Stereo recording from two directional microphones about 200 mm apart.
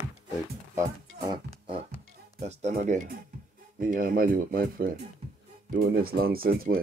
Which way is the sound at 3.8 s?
45° right (ahead or behind).